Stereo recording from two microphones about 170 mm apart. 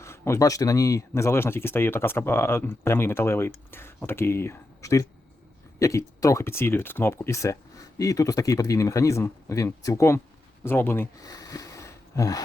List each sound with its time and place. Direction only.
0.0 s speech: 15° left (ahead or behind)